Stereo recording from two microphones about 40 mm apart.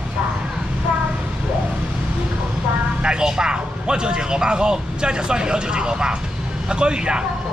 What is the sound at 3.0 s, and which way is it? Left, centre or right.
A man's voice, centre.